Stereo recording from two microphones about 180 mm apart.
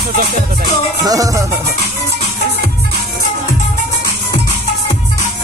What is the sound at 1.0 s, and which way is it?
Music, 20° right (ahead or behind).